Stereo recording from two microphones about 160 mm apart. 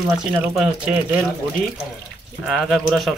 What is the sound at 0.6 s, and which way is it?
Speech, 5° right (ahead or behind).